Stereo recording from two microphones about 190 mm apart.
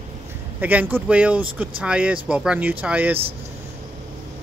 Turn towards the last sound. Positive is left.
turn(degrees=-10)  # may be behind; listen again after turning